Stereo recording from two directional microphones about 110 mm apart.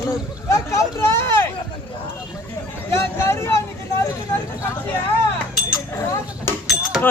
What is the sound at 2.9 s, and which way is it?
Vehicle, 25° left (ahead or behind).